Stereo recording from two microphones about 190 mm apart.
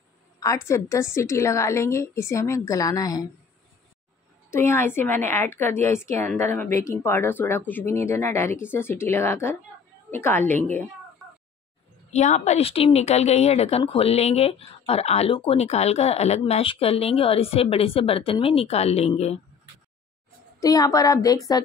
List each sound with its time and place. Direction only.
0.7 s speech: 15° left (ahead or behind)
4.5 s speech: 15° left (ahead or behind)
12.1 s speech: 35° left (ahead or behind)
20.6 s speech: 20° left (ahead or behind)